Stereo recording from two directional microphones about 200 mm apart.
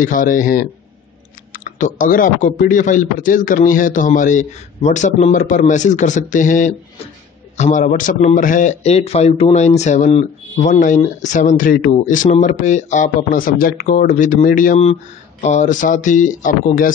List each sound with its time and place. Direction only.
0.0 s a man's voice: 40° left (ahead or behind)